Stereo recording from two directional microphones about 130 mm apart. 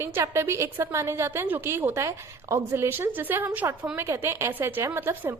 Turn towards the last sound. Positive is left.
turn(degrees=-20)  # may be behind; listen again after turning